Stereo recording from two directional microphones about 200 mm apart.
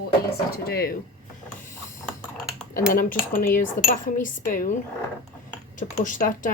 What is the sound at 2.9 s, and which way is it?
Speech, 45° left (ahead or behind).